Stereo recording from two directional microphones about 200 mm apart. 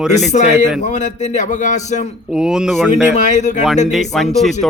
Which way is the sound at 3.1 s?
35° left (ahead or behind).